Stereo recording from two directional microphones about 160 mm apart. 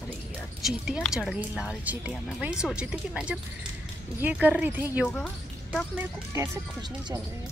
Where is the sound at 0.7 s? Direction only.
Centre (ahead or behind).